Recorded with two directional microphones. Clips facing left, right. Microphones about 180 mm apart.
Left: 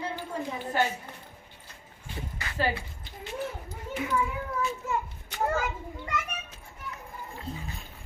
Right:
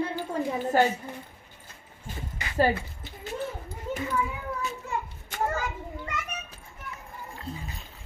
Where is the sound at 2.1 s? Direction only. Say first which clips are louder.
Even; 45° right (ahead or behind).